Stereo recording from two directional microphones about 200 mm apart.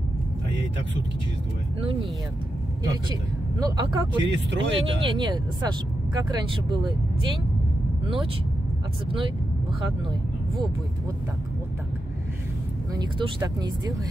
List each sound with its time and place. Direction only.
2.8 s speech: 20° right (ahead or behind)
4.2 s speech: 65° right (ahead or behind)
4.9 s speech: 25° right (ahead or behind)
12.9 s speech: 15° right (ahead or behind)